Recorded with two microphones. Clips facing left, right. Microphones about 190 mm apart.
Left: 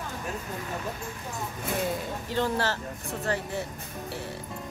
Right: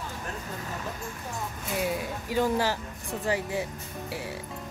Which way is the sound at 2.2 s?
10° right (ahead or behind).